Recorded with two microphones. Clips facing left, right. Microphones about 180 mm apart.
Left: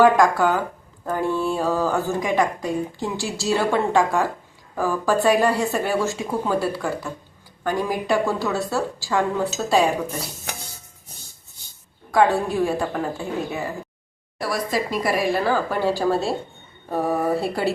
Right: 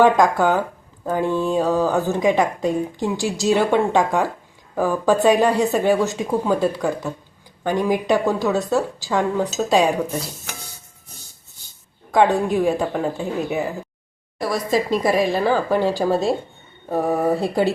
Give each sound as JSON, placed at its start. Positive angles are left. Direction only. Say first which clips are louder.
{"t": 0.0, "sound": "a woman's voice", "louder": "right 1 dB", "side_deg": -20}
{"t": 12.1, "sound": "a woman's voice", "louder": "right 2 dB", "side_deg": -20}